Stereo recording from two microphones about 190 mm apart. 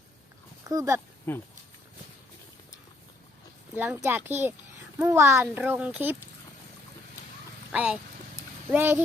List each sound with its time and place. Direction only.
0.7 s a child's voice: 15° right (ahead or behind)
1.3 s speech: 10° left (ahead or behind)
3.8 s a child's voice: 15° right (ahead or behind)
7.7 s a child's voice: 5° right (ahead or behind)